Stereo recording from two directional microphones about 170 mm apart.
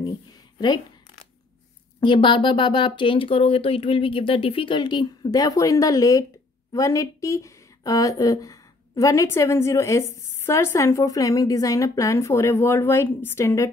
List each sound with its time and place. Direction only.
2.0 s a woman's voice: 30° left (ahead or behind)